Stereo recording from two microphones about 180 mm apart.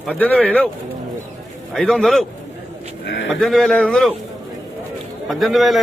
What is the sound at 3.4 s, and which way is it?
Speech, centre (ahead or behind).